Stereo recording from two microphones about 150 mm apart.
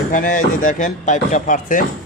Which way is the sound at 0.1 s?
60° left (ahead or behind).